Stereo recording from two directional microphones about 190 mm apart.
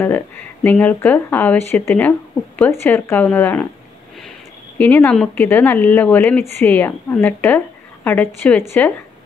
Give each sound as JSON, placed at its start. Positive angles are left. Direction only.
{"t": 0.7, "sound": "speech", "side_deg": 10}
{"t": 4.7, "sound": "a woman's voice", "side_deg": 10}